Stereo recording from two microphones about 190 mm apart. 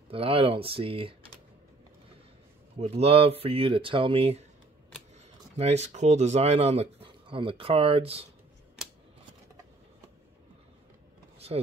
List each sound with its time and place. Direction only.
0.1 s speech: 30° right (ahead or behind)
2.8 s speech: 35° right (ahead or behind)
5.6 s speech: 35° right (ahead or behind)
11.3 s vehicle: 35° right (ahead or behind)